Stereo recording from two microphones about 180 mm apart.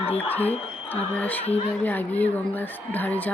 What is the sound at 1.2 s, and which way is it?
Speech, 10° left (ahead or behind).